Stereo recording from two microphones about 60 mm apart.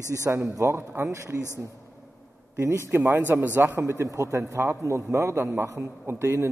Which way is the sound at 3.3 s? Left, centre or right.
Right.